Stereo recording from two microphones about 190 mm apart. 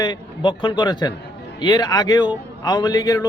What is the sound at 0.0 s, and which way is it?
A man's voice, 20° left (ahead or behind).